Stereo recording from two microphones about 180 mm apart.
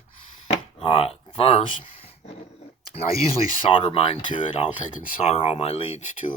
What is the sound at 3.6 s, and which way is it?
Speech, 30° left (ahead or behind).